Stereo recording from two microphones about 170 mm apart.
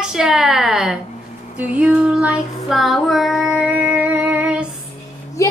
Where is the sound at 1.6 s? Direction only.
10° right (ahead or behind).